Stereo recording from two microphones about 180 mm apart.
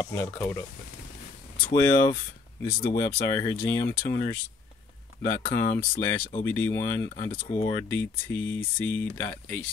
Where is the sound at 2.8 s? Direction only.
65° left (ahead or behind).